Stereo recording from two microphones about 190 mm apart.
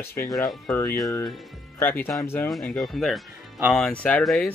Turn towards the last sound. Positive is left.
turn(degrees=5)  # may be behind; listen again after turning